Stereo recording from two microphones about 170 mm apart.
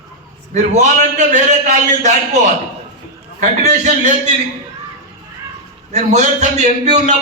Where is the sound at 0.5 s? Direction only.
45° right (ahead or behind).